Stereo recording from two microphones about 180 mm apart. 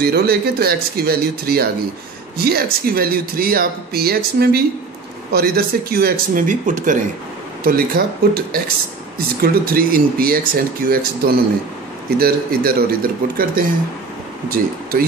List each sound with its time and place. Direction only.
0.0 s speech: 60° right (ahead or behind)